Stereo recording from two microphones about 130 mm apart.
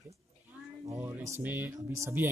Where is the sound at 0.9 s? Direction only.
20° right (ahead or behind).